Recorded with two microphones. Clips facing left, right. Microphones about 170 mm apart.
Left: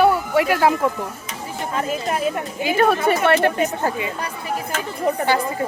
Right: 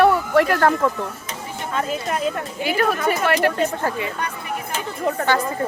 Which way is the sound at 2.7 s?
30° left (ahead or behind).